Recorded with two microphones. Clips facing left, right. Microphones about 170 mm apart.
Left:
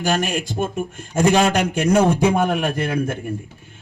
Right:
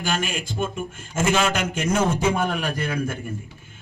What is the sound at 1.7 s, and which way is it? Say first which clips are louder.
Speech: left 6 dB; 65° left (ahead or behind).